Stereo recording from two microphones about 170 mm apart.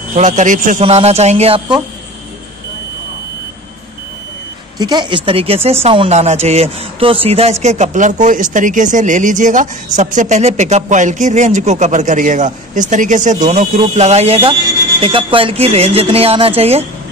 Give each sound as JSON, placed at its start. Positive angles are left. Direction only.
{"t": 0.1, "sound": "speech", "side_deg": -45}
{"t": 4.7, "sound": "speech", "side_deg": -25}